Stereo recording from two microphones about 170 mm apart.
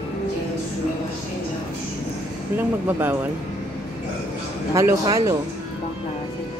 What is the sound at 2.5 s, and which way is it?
Speech, 10° right (ahead or behind).